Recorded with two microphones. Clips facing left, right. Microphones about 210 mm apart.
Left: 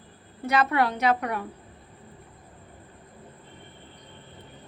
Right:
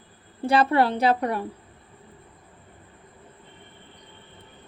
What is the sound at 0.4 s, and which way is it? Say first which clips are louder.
A woman's voice: right 4 dB; 30° right (ahead or behind).